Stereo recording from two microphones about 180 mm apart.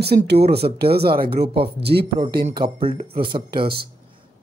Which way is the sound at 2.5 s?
30° right (ahead or behind).